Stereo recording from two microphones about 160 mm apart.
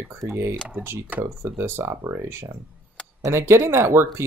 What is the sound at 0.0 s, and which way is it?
Speech, 15° right (ahead or behind).